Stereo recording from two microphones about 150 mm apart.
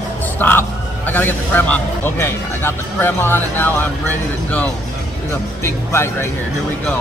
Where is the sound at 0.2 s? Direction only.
10° left (ahead or behind).